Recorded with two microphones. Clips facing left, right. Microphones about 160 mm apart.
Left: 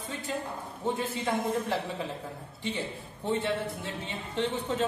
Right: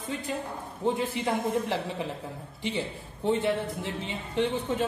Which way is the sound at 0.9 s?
15° right (ahead or behind).